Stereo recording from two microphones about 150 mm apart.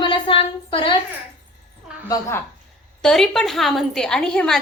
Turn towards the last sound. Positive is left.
turn(degrees=5)  # may be behind; listen again after turning